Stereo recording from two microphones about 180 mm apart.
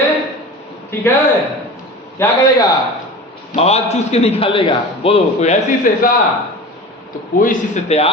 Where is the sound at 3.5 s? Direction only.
35° left (ahead or behind).